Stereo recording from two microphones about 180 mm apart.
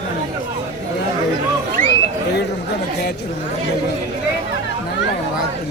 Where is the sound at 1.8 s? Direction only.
50° right (ahead or behind).